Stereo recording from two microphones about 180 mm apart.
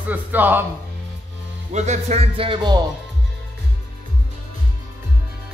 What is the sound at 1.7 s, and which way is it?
Music, 40° right (ahead or behind).